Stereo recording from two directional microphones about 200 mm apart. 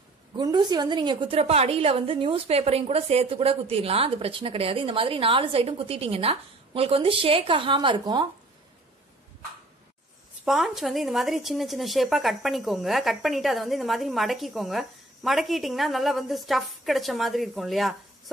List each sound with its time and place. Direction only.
0.4 s a woman's voice: 20° right (ahead or behind)
10.4 s speech: centre (ahead or behind)